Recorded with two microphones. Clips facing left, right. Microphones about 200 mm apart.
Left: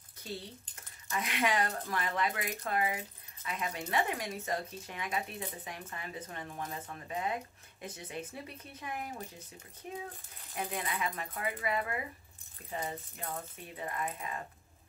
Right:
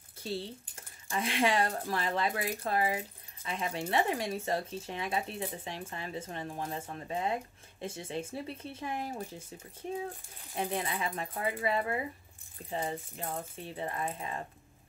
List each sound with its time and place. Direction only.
0.2 s speech: 30° right (ahead or behind)
10.5 s speech: 30° right (ahead or behind)